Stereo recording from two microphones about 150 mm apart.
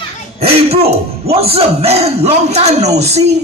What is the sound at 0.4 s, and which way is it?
Speech, 40° right (ahead or behind).